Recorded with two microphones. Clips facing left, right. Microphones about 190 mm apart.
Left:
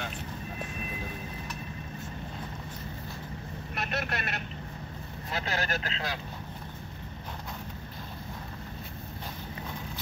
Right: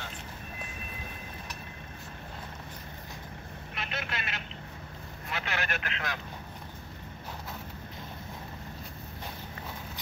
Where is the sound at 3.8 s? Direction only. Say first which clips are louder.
Left 4 dB; 45° left (ahead or behind).